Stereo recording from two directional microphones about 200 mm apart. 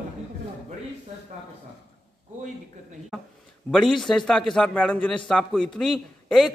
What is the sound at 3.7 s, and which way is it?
A man's voice, centre (ahead or behind).